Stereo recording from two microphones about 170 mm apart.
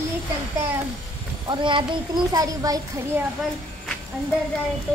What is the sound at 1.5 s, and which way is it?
A child's voice, 30° right (ahead or behind).